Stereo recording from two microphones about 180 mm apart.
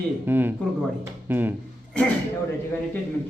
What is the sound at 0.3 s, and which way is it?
A man's voice, 10° right (ahead or behind).